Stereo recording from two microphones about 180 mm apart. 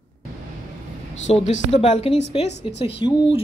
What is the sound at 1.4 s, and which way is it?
A woman's voice, 40° left (ahead or behind).